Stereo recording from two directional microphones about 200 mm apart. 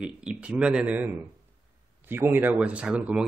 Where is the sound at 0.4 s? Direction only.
5° right (ahead or behind).